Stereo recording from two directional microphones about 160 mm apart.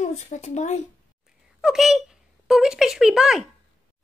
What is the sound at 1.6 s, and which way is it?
Speech, centre (ahead or behind).